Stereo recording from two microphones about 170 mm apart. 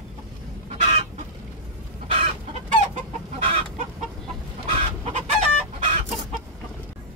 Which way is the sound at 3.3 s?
40° right (ahead or behind).